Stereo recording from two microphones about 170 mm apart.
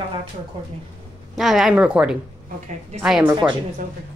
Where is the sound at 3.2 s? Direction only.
25° right (ahead or behind).